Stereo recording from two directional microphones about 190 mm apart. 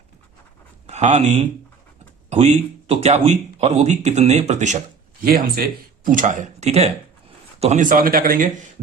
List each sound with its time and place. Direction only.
0.9 s speech: 35° right (ahead or behind)
5.2 s speech: 50° right (ahead or behind)